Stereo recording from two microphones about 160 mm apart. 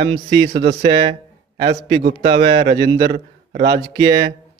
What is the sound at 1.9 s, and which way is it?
A man's voice, 45° right (ahead or behind).